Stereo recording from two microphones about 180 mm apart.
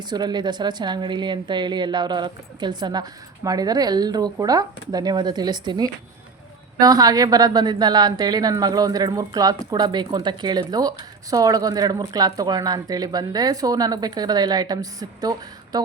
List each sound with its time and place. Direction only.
0.1 s a woman's voice: 25° right (ahead or behind)